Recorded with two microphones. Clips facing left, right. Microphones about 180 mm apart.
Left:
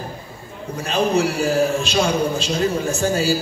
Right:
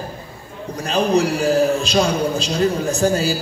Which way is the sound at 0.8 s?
35° right (ahead or behind).